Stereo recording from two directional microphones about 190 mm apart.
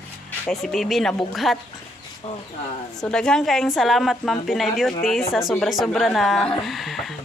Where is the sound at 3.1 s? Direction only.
5° left (ahead or behind).